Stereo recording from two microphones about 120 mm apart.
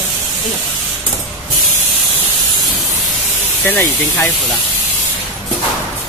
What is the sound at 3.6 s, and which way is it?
Speech, 20° left (ahead or behind).